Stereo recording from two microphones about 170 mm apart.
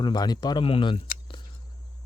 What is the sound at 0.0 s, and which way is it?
Speech, 25° left (ahead or behind).